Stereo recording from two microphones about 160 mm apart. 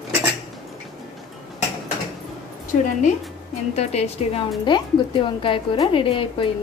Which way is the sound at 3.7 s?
40° left (ahead or behind).